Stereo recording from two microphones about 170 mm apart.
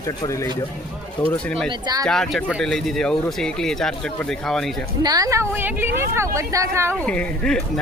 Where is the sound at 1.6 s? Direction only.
25° right (ahead or behind).